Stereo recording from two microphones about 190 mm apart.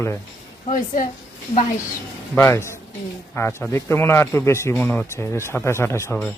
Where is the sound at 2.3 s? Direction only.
15° left (ahead or behind).